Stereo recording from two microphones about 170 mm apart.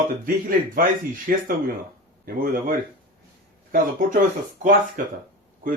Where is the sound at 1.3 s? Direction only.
60° right (ahead or behind).